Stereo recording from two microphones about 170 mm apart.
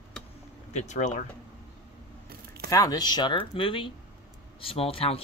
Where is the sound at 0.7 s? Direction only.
45° left (ahead or behind).